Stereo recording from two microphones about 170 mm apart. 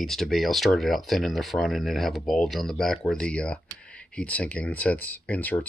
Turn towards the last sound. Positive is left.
turn(degrees=10)  # may be behind; listen again after turning